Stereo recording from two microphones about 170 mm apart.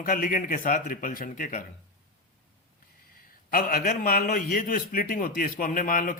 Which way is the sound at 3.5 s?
60° left (ahead or behind).